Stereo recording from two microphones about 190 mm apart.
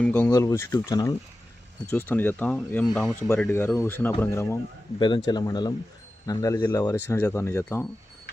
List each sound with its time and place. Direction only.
0.0 s speech: 10° left (ahead or behind)